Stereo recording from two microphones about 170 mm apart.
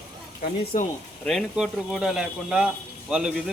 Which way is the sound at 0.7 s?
50° left (ahead or behind).